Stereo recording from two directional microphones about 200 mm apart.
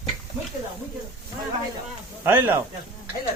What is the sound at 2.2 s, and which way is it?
Speech, 10° right (ahead or behind).